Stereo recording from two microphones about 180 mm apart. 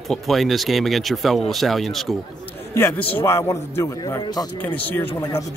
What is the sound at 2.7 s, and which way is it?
Speech, 15° left (ahead or behind).